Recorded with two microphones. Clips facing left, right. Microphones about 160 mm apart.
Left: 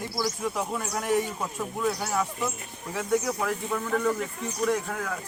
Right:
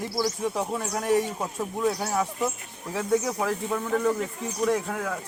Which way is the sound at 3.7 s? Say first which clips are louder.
Even; 10° right (ahead or behind).